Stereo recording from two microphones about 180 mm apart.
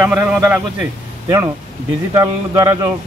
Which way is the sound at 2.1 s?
20° right (ahead or behind).